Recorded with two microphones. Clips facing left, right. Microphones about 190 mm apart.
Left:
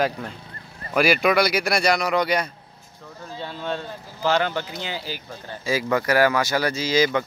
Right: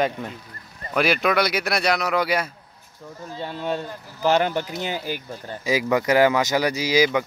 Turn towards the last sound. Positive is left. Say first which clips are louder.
# right 1 dB
turn(degrees=-15)  # may be behind; listen again after turning